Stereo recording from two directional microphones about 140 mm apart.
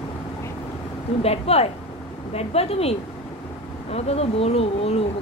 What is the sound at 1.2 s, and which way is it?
Speech, 45° left (ahead or behind).